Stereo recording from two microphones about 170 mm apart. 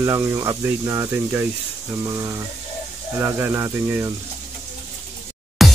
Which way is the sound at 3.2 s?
15° right (ahead or behind).